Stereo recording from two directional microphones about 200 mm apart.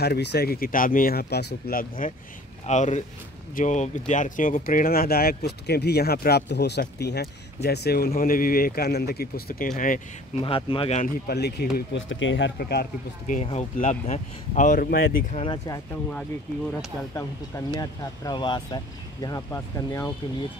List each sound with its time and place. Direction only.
0.0 s speech: 55° left (ahead or behind)
10.4 s speech: 25° left (ahead or behind)
11.2 s speech: 55° left (ahead or behind)
11.7 s speech: 65° left (ahead or behind)
13.3 s speech: 35° left (ahead or behind)
15.3 s speech: 25° left (ahead or behind)
17.1 s speech: 15° left (ahead or behind)